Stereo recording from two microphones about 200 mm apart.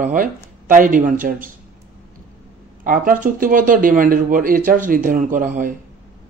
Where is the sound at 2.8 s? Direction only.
45° right (ahead or behind).